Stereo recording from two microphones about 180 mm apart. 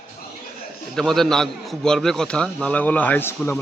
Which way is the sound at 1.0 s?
Centre (ahead or behind).